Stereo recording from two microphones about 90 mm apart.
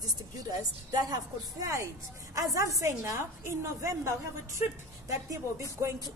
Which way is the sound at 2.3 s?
40° right (ahead or behind).